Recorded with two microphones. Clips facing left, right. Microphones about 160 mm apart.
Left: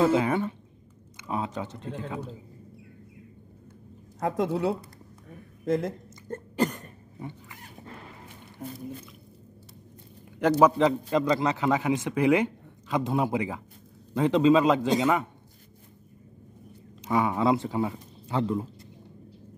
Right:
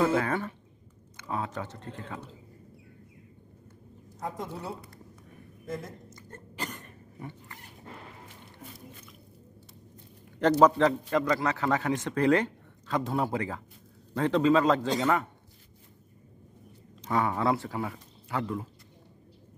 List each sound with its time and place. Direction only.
0.0 s a man's voice: 20° left (ahead or behind)
4.2 s a woman's voice: 75° left (ahead or behind)
6.3 s a sound: 45° left (ahead or behind)
7.2 s zipper: 20° left (ahead or behind)
10.4 s a man's voice: 10° left (ahead or behind)
17.0 s speech: 10° left (ahead or behind)